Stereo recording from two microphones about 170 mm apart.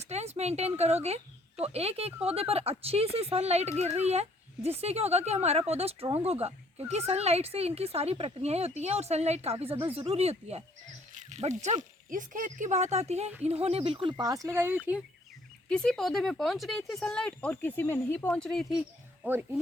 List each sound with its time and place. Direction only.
0.1 s speech: 40° right (ahead or behind); by 15.0 s 10° right (ahead or behind)
15.7 s speech: 5° left (ahead or behind)